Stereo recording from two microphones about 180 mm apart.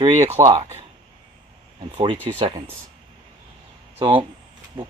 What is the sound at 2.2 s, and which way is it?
Speech, 30° right (ahead or behind).